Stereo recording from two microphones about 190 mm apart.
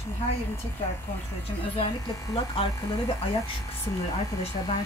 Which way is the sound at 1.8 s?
20° left (ahead or behind).